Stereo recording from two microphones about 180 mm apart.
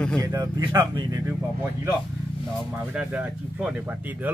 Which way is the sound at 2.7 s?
10° right (ahead or behind).